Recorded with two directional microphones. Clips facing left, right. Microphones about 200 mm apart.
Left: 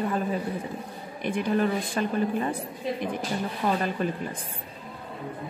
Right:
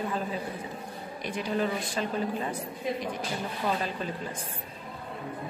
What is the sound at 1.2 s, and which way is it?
Speech, 55° left (ahead or behind).